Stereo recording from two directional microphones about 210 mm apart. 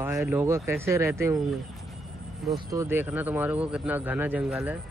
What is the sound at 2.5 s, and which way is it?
Speech, 15° right (ahead or behind).